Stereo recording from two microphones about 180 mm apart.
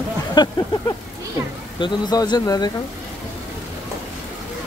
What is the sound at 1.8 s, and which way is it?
Speech, 25° left (ahead or behind).